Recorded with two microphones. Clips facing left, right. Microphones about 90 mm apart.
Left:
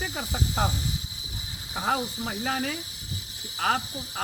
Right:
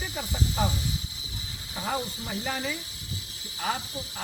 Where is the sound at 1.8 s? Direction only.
55° left (ahead or behind).